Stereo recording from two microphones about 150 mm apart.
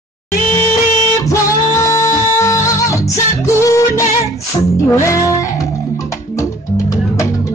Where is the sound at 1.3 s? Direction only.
20° left (ahead or behind).